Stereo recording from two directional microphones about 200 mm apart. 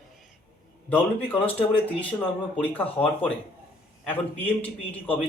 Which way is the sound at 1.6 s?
5° left (ahead or behind).